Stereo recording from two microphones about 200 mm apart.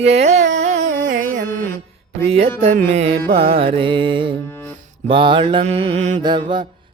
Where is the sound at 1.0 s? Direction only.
40° right (ahead or behind).